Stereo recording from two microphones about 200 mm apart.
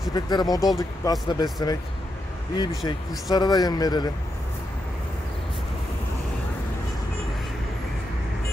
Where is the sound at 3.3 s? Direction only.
20° left (ahead or behind).